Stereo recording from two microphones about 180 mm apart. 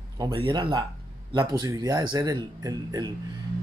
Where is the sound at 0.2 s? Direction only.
25° right (ahead or behind).